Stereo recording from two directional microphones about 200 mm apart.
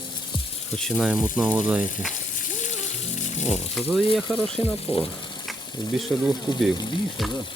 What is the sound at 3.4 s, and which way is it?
Speech, 5° right (ahead or behind).